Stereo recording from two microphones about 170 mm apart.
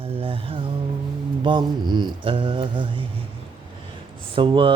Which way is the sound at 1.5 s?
25° right (ahead or behind).